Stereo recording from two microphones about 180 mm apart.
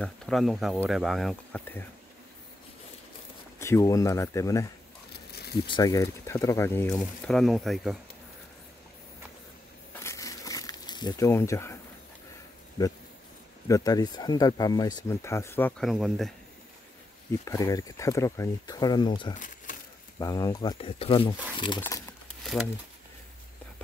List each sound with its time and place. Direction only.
0.0 s speech: centre (ahead or behind)
3.5 s speech: 15° left (ahead or behind)
5.3 s a sound: 60° left (ahead or behind)
5.7 s speech: 20° left (ahead or behind); by 8.0 s centre (ahead or behind)
9.9 s crumpling: 15° left (ahead or behind)
12.8 s speech: 25° left (ahead or behind)
15.9 s speech: centre (ahead or behind)
17.5 s speech: 20° left (ahead or behind)
19.3 s crumpling: 45° left (ahead or behind)
20.2 s speech: 20° left (ahead or behind)